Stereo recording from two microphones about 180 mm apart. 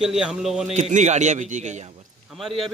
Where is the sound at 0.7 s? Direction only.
40° right (ahead or behind).